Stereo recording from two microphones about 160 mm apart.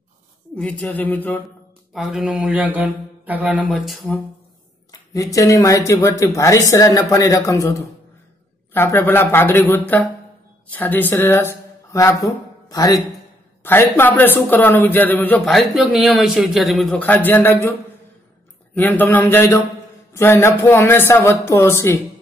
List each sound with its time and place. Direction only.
0.6 s a man's voice: 5° left (ahead or behind)
2.0 s speech: centre (ahead or behind)
5.1 s a man's voice: 20° left (ahead or behind)
8.7 s a man's voice: 15° left (ahead or behind)
15.4 s speech: centre (ahead or behind)
17.0 s a man's voice: 10° left (ahead or behind)
18.8 s a man's voice: 10° left (ahead or behind)